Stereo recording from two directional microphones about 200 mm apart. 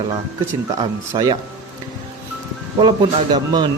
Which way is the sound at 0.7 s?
20° right (ahead or behind).